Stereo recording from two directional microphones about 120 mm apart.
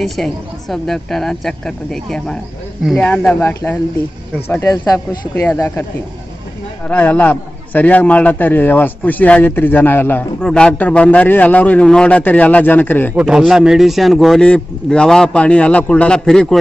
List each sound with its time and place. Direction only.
0.0 s speech: centre (ahead or behind)
3.3 s a man's voice: 20° left (ahead or behind)
4.6 s a man's voice: 30° left (ahead or behind)
6.9 s a man's voice: 15° left (ahead or behind)
13.1 s a man's voice: 10° right (ahead or behind)